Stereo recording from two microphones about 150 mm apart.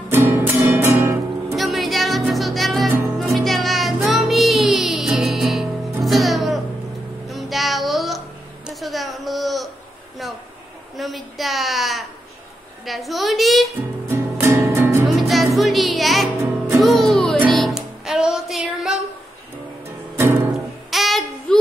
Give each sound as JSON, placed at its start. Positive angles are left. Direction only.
{"t": 0.1, "sound": "music", "side_deg": -15}
{"t": 1.6, "sound": "music", "side_deg": 0}
{"t": 8.6, "sound": "a sound", "side_deg": 0}
{"t": 11.0, "sound": "a sound", "side_deg": 0}
{"t": 14.0, "sound": "music", "side_deg": -15}
{"t": 15.0, "sound": "music", "side_deg": 0}
{"t": 20.9, "sound": "child singing", "side_deg": 0}